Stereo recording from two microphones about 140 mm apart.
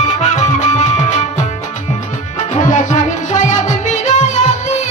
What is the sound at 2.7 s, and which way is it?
Music, 60° left (ahead or behind).